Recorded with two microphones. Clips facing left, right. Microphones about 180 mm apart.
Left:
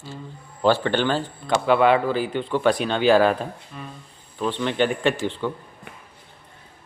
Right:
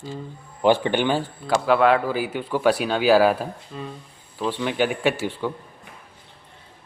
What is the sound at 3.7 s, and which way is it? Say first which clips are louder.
Mantra: right 4 dB; 25° right (ahead or behind).